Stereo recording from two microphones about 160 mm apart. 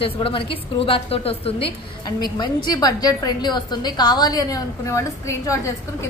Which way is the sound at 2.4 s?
25° left (ahead or behind).